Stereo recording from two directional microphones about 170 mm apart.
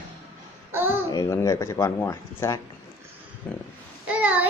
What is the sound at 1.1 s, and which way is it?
Speech, 20° left (ahead or behind).